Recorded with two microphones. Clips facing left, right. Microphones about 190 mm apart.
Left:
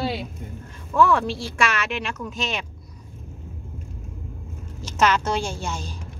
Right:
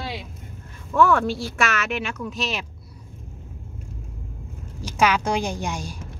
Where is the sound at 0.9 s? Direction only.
Centre (ahead or behind).